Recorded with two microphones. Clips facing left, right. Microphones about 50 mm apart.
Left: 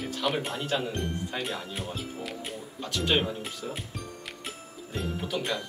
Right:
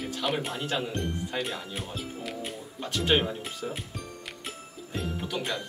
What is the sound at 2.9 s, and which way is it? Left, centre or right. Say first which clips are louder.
Speech: right 1 dB; right.